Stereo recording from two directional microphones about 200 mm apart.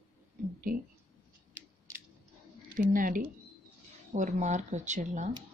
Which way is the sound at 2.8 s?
40° right (ahead or behind).